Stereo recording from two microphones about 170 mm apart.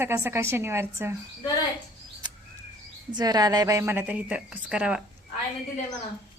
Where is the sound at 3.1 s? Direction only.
25° right (ahead or behind); by 5.0 s 5° right (ahead or behind).